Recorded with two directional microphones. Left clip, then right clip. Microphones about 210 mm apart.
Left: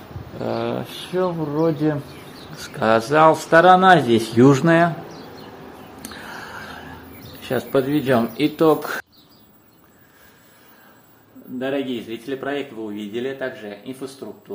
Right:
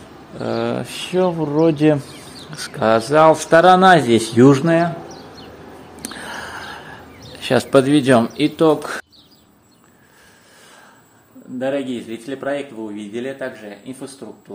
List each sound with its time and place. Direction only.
0.4 s speech: 20° right (ahead or behind)
2.5 s speech: 15° right (ahead or behind); by 5.2 s centre (ahead or behind)
6.0 s a sound: 35° right (ahead or behind)
7.3 s speech: 45° right (ahead or behind)
8.4 s speech: 15° right (ahead or behind)
11.6 s speech: 15° right (ahead or behind)